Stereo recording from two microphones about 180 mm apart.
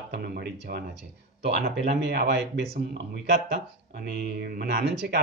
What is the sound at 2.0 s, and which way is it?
Speech, 65° right (ahead or behind).